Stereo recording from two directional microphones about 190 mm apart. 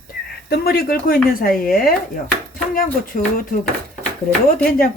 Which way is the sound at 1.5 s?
5° left (ahead or behind).